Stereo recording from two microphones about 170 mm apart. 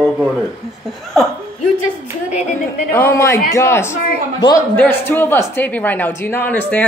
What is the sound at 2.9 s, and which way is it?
A woman's voice, 15° left (ahead or behind).